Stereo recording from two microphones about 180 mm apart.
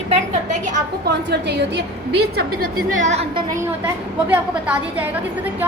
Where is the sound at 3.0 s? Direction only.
40° right (ahead or behind).